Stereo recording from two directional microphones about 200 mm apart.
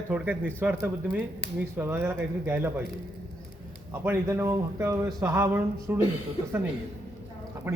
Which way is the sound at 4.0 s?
15° right (ahead or behind).